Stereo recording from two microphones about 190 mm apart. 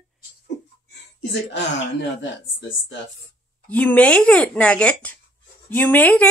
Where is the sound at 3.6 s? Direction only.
10° left (ahead or behind).